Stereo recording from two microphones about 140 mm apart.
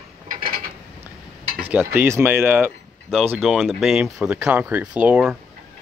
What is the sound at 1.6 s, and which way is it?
Speech, 15° right (ahead or behind).